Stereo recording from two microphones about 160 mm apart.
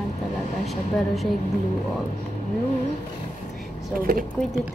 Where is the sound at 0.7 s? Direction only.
Centre (ahead or behind).